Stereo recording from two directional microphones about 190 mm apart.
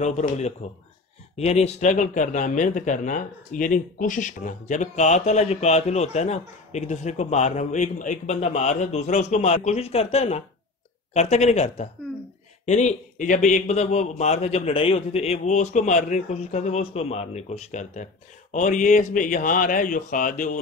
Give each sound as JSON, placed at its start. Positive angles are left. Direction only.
{"t": 0.0, "sound": "speech", "side_deg": 35}